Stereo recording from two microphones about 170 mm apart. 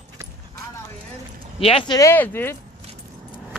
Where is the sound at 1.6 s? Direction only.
30° left (ahead or behind).